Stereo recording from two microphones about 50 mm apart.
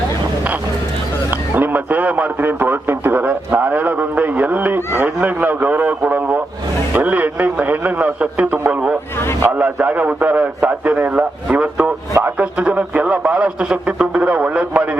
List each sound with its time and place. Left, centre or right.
1.3 s radio: right
4.9 s honk: right
6.9 s a sound: right
12.4 s radio: right